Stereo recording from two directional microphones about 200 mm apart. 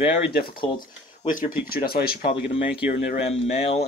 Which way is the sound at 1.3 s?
45° left (ahead or behind).